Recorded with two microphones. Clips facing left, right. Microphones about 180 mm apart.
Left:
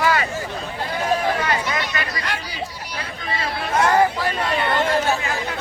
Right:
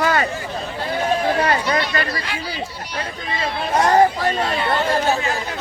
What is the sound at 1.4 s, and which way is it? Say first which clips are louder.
Speech: right 4 dB; 40° right (ahead or behind).